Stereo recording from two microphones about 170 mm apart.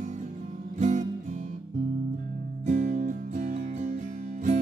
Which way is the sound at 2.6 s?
45° right (ahead or behind).